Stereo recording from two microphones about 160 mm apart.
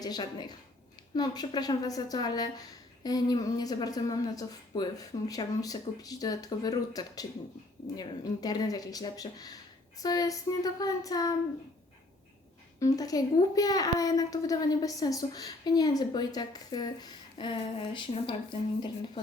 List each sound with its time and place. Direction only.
0.0 s a child's voice: 25° left (ahead or behind)
12.8 s a child's voice: 25° left (ahead or behind)